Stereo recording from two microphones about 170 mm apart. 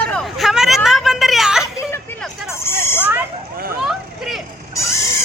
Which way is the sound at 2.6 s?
15° left (ahead or behind).